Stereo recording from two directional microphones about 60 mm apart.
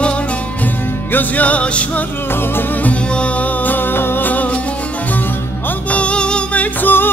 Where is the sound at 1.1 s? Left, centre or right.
Left.